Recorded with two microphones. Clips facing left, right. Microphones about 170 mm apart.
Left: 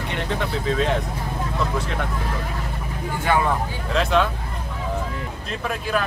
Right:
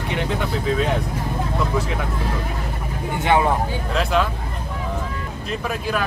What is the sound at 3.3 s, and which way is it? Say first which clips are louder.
Speech: right 3 dB; 20° right (ahead or behind).